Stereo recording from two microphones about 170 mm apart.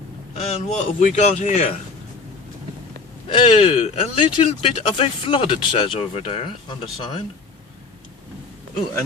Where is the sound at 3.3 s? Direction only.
35° left (ahead or behind).